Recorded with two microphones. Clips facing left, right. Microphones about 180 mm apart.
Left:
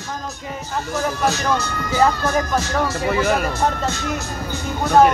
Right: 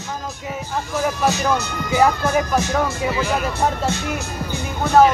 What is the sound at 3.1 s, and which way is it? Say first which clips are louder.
Speech: left 3 dB; 55° left (ahead or behind).